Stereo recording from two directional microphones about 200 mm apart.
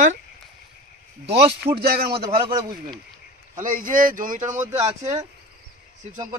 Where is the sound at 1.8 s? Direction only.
50° right (ahead or behind).